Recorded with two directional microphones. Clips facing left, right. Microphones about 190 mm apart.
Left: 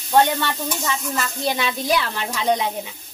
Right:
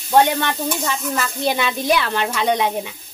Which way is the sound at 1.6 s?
65° right (ahead or behind).